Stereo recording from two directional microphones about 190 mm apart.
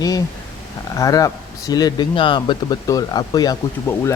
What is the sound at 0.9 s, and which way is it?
Speech, 15° left (ahead or behind).